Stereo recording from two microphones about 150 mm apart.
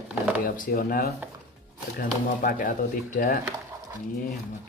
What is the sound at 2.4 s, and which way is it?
Speech, 70° left (ahead or behind).